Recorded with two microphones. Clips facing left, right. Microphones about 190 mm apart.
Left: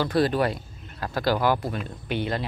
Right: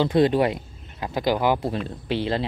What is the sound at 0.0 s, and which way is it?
Speech, 25° right (ahead or behind).